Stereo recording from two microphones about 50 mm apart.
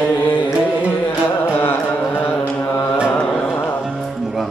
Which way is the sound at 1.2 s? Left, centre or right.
Left.